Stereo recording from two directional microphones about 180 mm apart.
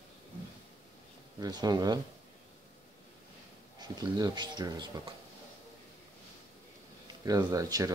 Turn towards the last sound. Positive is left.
turn(degrees=-20)  # may be behind; listen again after turning